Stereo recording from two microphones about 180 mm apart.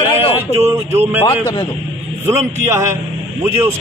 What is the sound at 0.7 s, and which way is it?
Speech, 10° right (ahead or behind).